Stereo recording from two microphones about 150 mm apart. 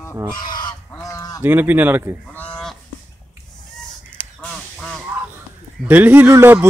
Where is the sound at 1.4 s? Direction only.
15° right (ahead or behind).